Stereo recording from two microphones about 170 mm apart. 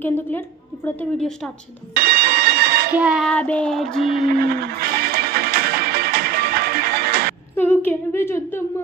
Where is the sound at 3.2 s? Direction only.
10° left (ahead or behind).